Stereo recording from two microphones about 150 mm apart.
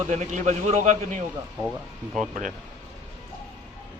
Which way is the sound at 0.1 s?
50° right (ahead or behind).